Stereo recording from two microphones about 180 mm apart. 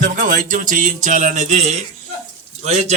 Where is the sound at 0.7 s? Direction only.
45° right (ahead or behind).